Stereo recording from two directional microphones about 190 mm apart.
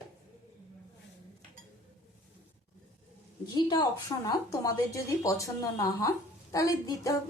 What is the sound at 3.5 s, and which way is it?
A woman's voice, 20° left (ahead or behind).